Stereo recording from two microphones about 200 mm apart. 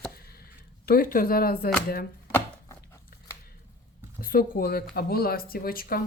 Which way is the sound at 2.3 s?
10° left (ahead or behind).